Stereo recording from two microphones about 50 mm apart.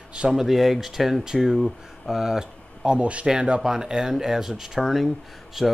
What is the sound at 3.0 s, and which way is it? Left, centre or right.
Speech, right.